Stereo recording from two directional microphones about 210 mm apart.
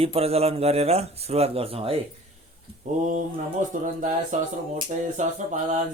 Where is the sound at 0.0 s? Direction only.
30° right (ahead or behind).